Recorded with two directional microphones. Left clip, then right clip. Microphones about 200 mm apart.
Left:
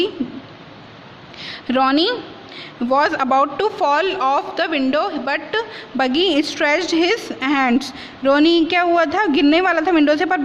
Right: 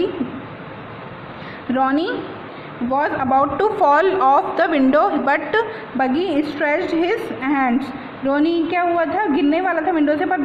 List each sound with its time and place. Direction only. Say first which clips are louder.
1.7 s a woman's voice: left 3 dB; 35° left (ahead or behind)
3.3 s a woman's voice: right 1 dB; 25° left (ahead or behind)
6.0 s a woman's voice: left 2 dB; 30° left (ahead or behind)
8.2 s a woman's voice: left 4 dB; 45° left (ahead or behind)